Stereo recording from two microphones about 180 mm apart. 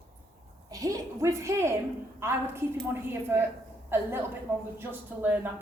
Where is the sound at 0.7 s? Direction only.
20° right (ahead or behind).